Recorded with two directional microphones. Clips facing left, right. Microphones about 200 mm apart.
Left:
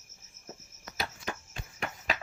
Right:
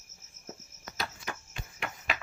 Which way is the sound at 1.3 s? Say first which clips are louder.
Left 2 dB; 20° left (ahead or behind).